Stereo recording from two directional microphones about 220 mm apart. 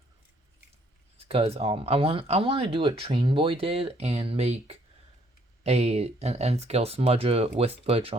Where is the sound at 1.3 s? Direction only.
25° right (ahead or behind).